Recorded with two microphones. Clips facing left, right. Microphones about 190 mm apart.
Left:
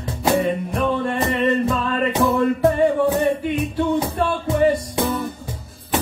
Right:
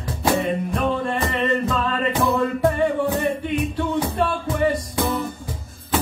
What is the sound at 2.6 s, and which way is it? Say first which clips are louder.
Music: left 4 dB; 25° left (ahead or behind).